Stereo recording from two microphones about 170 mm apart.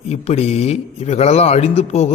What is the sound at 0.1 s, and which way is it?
Speech, 40° left (ahead or behind).